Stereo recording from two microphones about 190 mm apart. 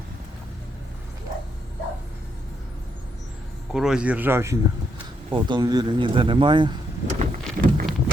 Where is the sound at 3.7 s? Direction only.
5° right (ahead or behind).